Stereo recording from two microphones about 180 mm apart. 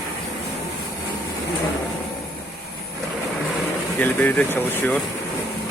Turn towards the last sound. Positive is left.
turn(degrees=10)  # may be behind; listen again after turning